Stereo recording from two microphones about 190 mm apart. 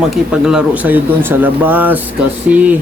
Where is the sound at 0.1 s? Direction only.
5° right (ahead or behind).